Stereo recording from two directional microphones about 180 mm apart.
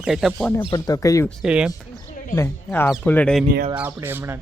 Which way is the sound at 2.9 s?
10° left (ahead or behind).